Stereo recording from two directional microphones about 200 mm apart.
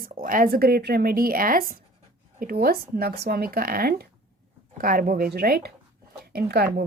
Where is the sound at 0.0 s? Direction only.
45° right (ahead or behind).